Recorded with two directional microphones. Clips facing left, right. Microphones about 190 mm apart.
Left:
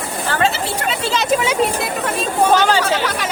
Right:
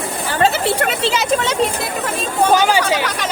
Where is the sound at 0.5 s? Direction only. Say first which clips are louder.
Right 5 dB; 60° right (ahead or behind).